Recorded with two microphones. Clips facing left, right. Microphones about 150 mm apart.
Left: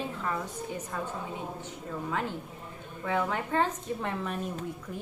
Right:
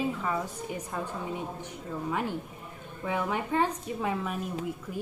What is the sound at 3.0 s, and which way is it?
A woman's voice, 15° right (ahead or behind).